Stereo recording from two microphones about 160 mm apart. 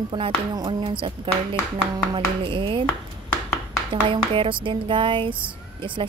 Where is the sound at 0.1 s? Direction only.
30° right (ahead or behind).